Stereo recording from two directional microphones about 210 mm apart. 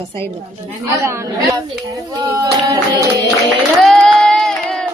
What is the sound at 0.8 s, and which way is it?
A woman's voice, 15° right (ahead or behind).